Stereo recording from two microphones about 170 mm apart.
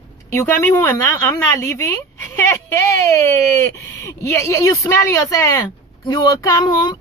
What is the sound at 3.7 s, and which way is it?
Speech, 20° left (ahead or behind).